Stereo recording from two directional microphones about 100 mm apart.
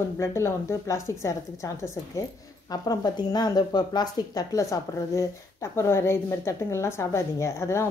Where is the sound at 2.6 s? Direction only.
40° left (ahead or behind).